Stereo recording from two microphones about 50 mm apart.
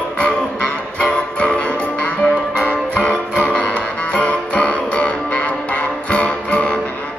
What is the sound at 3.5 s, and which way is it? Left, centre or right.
Music, left.